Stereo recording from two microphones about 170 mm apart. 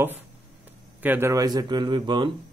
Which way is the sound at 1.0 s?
15° right (ahead or behind).